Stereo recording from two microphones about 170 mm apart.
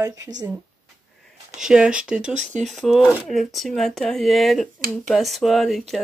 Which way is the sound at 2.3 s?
45° right (ahead or behind).